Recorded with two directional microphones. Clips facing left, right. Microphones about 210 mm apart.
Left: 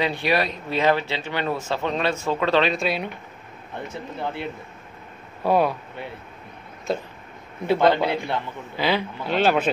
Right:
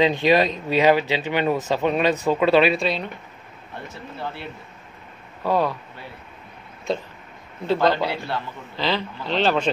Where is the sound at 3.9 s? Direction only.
20° left (ahead or behind).